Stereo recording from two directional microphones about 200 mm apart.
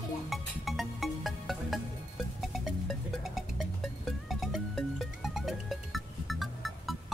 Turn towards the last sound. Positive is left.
turn(degrees=0)  # may be behind; listen again after turning